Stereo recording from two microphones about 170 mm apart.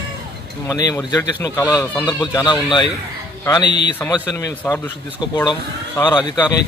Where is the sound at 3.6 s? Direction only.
90° left.